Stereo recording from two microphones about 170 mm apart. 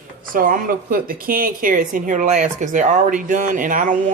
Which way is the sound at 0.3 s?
55° right (ahead or behind).